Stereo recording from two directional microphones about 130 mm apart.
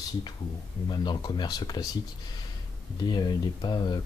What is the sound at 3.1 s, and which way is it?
Speech, 35° left (ahead or behind).